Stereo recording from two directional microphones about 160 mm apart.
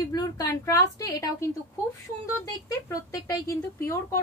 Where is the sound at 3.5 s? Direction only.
15° left (ahead or behind).